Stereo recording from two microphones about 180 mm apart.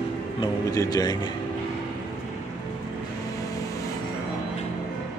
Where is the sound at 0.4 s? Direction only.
20° left (ahead or behind).